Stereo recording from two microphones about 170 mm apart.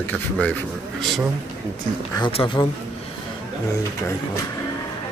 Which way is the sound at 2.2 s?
30° left (ahead or behind).